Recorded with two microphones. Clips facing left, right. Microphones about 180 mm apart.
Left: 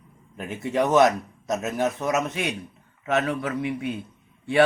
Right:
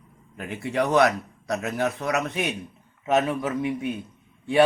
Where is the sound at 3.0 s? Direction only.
20° right (ahead or behind).